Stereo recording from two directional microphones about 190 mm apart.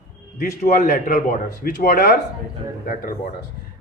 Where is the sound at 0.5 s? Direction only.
40° left (ahead or behind).